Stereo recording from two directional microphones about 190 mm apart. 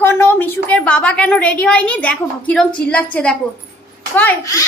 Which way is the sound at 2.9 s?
5° left (ahead or behind).